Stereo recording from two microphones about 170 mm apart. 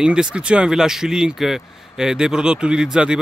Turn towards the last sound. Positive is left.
turn(degrees=-5)  # may be behind; listen again after turning